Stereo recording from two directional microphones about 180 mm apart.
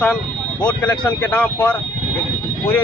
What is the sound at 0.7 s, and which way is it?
Speech, 15° left (ahead or behind).